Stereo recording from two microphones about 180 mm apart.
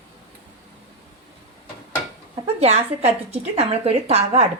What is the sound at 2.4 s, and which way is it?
Speech, 35° right (ahead or behind).